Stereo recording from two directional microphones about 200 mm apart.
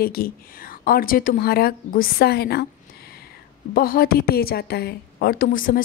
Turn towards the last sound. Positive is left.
turn(degrees=45)  # may be behind; listen again after turning